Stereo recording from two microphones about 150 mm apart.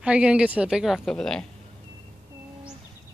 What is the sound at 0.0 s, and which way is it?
A woman's voice, 5° right (ahead or behind).